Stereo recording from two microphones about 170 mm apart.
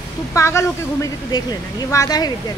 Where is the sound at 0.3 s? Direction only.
15° left (ahead or behind).